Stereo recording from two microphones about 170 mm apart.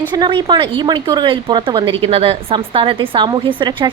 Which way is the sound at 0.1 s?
30° right (ahead or behind).